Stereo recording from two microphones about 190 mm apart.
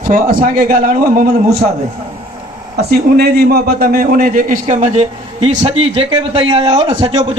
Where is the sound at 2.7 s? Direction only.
55° right (ahead or behind).